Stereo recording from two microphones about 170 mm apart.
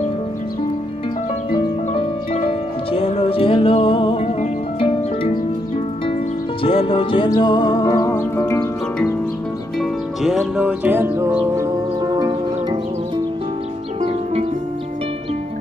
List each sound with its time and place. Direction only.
1.5 s music: 30° left (ahead or behind)
6.6 s music: 35° left (ahead or behind); by 8.6 s 15° left (ahead or behind)
9.8 s music: centre (ahead or behind); by 12.4 s 25° right (ahead or behind)